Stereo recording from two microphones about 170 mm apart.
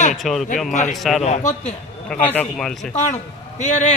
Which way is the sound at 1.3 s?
40° left (ahead or behind).